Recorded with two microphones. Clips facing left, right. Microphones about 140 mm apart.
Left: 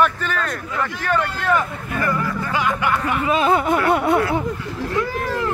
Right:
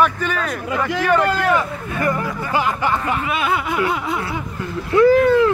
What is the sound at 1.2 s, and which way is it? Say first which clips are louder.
Speech: right 7 dB; 90° right.